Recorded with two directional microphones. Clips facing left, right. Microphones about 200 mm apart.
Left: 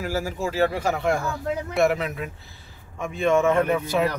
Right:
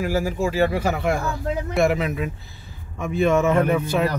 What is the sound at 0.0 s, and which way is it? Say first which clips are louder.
Speech: right 4 dB; 15° right (ahead or behind).